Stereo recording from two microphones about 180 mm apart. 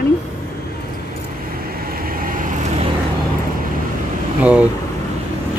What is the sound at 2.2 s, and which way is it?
Vehicle, 50° right (ahead or behind).